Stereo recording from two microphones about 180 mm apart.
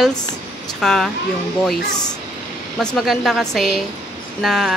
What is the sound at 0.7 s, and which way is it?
Speech, centre (ahead or behind).